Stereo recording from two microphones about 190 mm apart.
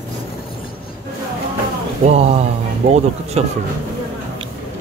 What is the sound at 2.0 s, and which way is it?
Speech, 35° right (ahead or behind).